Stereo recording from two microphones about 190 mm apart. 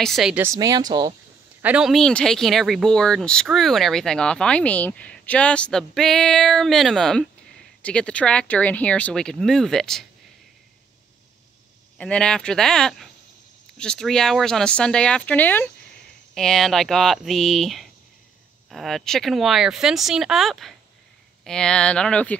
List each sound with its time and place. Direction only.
0.0 s speech: centre (ahead or behind); by 1.1 s 20° right (ahead or behind)
1.6 s speech: 5° right (ahead or behind)
12.0 s speech: 5° left (ahead or behind)